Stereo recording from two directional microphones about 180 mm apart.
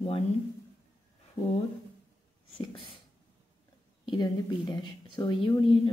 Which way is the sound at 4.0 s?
25° left (ahead or behind).